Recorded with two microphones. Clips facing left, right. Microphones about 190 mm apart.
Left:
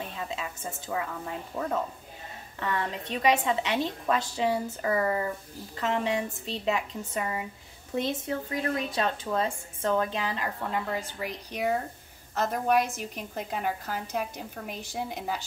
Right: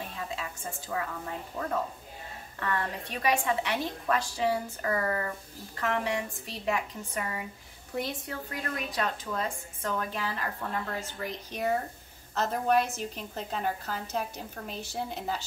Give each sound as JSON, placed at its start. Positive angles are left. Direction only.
{"t": 0.4, "sound": "speech", "side_deg": 20}
{"t": 2.6, "sound": "a woman's voice", "side_deg": 20}